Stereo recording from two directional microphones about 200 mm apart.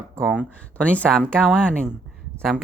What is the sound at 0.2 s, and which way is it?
Speech, 5° right (ahead or behind).